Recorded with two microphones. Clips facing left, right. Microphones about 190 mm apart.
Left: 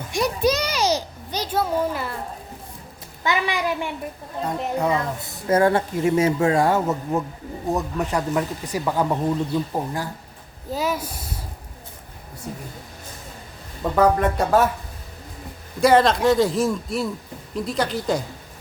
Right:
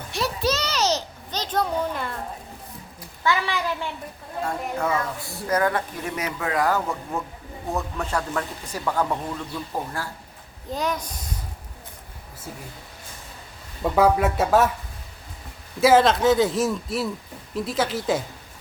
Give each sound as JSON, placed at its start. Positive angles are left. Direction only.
{"t": 0.1, "sound": "a child's voice", "side_deg": 15}
{"t": 3.2, "sound": "speech", "side_deg": 15}
{"t": 10.7, "sound": "speech", "side_deg": 5}
{"t": 13.9, "sound": "speech", "side_deg": -10}
{"t": 15.8, "sound": "speech", "side_deg": 0}